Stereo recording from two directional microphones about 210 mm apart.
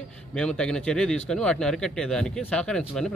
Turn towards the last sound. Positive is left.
turn(degrees=5)  # may be behind; listen again after turning